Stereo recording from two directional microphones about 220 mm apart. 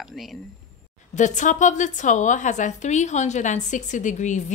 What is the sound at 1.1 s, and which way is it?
A woman's voice, 35° left (ahead or behind).